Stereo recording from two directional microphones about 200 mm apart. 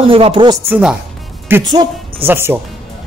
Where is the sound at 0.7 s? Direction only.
5° right (ahead or behind).